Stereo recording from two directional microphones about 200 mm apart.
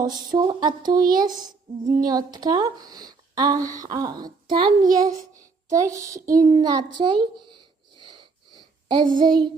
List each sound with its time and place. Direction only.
0.0 s a woman's voice: 20° right (ahead or behind)